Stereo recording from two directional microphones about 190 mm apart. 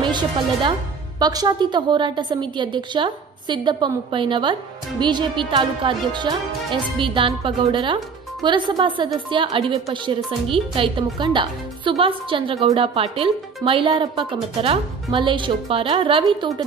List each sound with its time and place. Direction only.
0.0 s speech: 25° right (ahead or behind)